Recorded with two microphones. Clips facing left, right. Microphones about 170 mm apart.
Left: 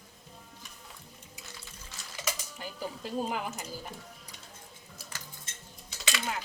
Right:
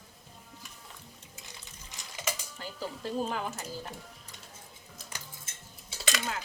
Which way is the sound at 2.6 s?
15° left (ahead or behind).